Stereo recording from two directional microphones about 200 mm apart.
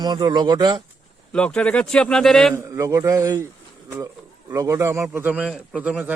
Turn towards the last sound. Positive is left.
turn(degrees=-5)  # may be behind; listen again after turning